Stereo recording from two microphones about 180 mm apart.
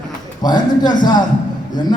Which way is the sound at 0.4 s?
25° left (ahead or behind).